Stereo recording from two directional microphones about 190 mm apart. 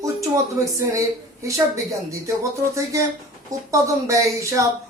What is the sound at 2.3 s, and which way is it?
Speech, 15° right (ahead or behind).